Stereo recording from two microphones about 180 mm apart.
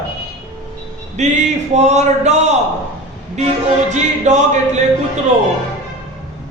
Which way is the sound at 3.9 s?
40° right (ahead or behind).